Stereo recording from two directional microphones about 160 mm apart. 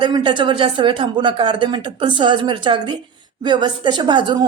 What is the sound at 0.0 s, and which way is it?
A woman's voice, 30° right (ahead or behind).